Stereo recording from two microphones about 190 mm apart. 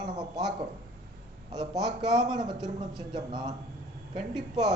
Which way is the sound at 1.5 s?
20° right (ahead or behind).